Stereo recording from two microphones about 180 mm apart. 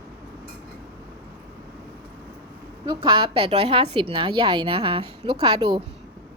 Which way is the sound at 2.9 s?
25° right (ahead or behind).